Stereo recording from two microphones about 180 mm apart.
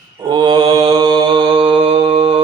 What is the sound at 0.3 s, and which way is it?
Mantra, 25° right (ahead or behind).